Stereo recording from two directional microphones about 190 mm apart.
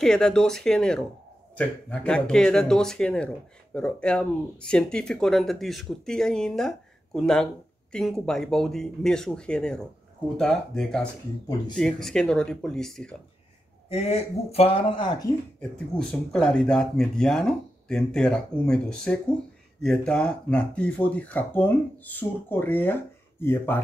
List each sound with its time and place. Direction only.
0.0 s speech: 5° left (ahead or behind)
13.8 s speech: 35° left (ahead or behind)
15.9 s speech: 5° left (ahead or behind)